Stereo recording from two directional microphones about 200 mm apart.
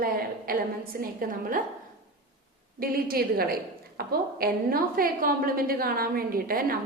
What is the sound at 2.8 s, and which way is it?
A woman's voice, 45° right (ahead or behind).